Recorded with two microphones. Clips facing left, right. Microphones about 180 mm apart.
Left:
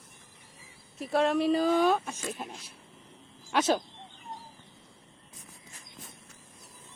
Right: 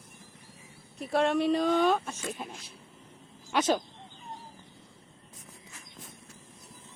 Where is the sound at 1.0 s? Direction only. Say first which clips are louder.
Even; centre (ahead or behind).